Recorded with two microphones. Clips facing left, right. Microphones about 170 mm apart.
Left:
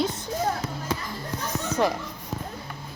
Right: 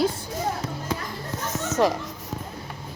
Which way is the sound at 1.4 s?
20° right (ahead or behind).